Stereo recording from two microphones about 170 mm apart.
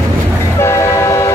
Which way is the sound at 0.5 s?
15° left (ahead or behind).